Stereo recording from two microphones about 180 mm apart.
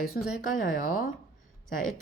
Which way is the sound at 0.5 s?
50° left (ahead or behind).